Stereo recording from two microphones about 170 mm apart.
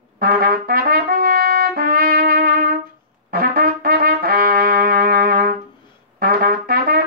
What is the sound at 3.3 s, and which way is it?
Trumpet, 60° right (ahead or behind).